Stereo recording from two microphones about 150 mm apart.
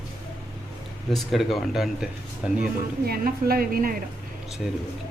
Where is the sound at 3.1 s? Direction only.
85° right.